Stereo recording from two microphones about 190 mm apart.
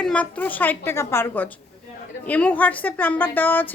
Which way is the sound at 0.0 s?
5° left (ahead or behind).